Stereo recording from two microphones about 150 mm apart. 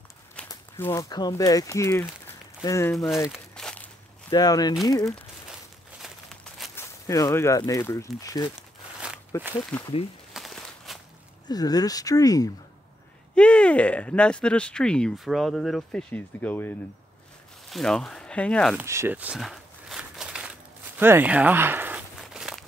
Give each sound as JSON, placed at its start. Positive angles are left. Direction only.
{"t": 0.5, "sound": "speech", "side_deg": 20}
{"t": 3.3, "sound": "a sound", "side_deg": 5}
{"t": 4.3, "sound": "speech", "side_deg": 25}
{"t": 6.0, "sound": "crumpling", "side_deg": 0}
{"t": 6.7, "sound": "speech", "side_deg": 20}
{"t": 8.5, "sound": "crumpling", "side_deg": -5}
{"t": 9.7, "sound": "speech", "side_deg": 5}
{"t": 10.3, "sound": "a sound", "side_deg": 0}
{"t": 11.4, "sound": "speech", "side_deg": 25}
{"t": 13.3, "sound": "speech", "side_deg": 5}
{"t": 17.6, "sound": "speech", "side_deg": 0}
{"t": 18.8, "sound": "a sound", "side_deg": -15}